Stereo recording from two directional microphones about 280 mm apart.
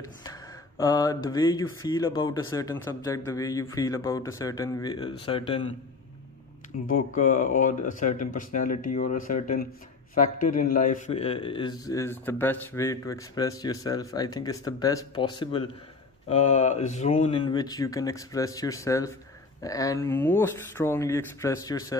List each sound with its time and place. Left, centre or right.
0.0 s a man's voice: centre
7.2 s a man's voice: left
17.5 s a man's voice: centre